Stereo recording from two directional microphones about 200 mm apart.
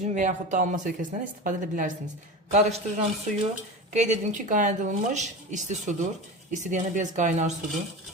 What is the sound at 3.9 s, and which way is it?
Speech, 35° right (ahead or behind).